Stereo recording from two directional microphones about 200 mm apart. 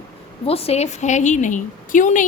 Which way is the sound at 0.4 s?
30° left (ahead or behind).